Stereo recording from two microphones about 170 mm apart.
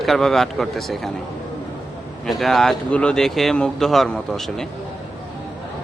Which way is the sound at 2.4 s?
Centre (ahead or behind).